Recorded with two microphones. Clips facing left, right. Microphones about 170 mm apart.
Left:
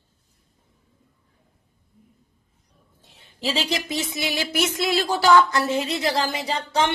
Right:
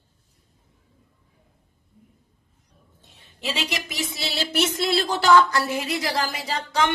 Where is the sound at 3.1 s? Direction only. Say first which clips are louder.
Left 3 dB; 30° left (ahead or behind).